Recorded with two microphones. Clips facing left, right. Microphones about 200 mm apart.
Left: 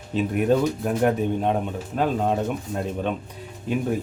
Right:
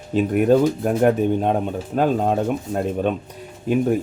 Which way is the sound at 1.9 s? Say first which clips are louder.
Right 4 dB; 45° right (ahead or behind).